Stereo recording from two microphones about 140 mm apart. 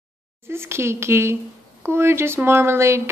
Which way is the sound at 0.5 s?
20° right (ahead or behind).